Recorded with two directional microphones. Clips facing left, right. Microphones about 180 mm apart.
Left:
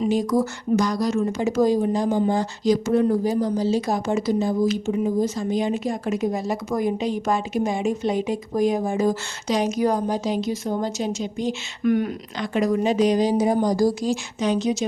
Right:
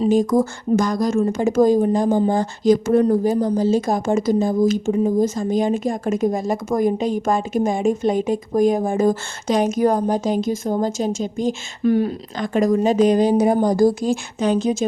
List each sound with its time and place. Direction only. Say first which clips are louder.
0.1 s speech: right 4 dB; 50° right (ahead or behind)
11.8 s speech: right 3 dB; 30° right (ahead or behind)
12.4 s speech: right 4 dB; 45° right (ahead or behind)